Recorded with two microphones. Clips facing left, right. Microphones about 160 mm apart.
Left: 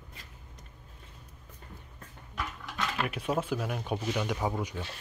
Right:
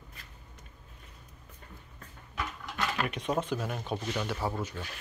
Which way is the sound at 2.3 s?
Centre (ahead or behind).